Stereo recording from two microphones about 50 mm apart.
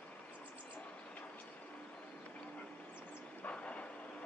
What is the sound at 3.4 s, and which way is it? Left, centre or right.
Train, left.